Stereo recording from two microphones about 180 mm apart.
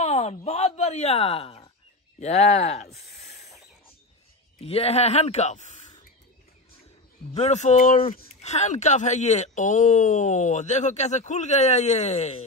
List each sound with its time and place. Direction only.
0.0 s speech: 35° left (ahead or behind)
4.6 s speech: 35° left (ahead or behind)
7.3 s speech: 40° left (ahead or behind)